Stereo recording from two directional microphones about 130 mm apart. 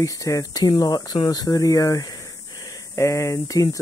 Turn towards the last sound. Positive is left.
turn(degrees=25)  # may be behind; listen again after turning